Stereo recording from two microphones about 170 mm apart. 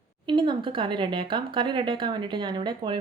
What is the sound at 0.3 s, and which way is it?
Speech, 25° right (ahead or behind).